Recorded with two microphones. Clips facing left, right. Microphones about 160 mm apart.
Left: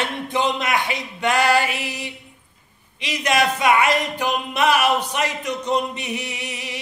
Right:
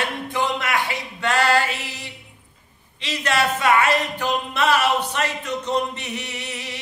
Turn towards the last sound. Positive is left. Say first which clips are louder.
# left 1 dB
turn(degrees=15)  # may be behind; listen again after turning